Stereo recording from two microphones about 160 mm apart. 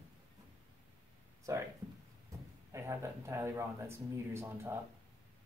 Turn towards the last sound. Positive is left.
turn(degrees=-15)  # may be behind; listen again after turning